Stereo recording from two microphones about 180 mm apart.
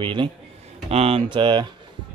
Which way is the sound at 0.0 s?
25° right (ahead or behind).